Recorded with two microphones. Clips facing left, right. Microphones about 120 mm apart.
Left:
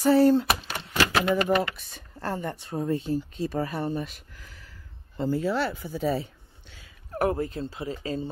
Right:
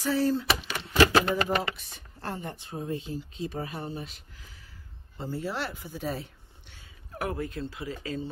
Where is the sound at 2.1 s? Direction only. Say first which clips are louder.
Left 5 dB; 45° left (ahead or behind).